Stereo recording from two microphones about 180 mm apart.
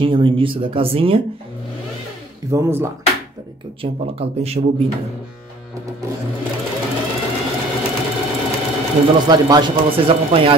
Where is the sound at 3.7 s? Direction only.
30° right (ahead or behind).